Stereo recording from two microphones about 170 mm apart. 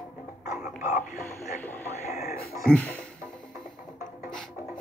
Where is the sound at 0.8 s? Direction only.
45° left (ahead or behind).